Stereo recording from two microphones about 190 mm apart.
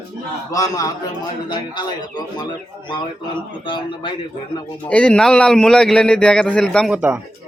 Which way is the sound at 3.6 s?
25° left (ahead or behind).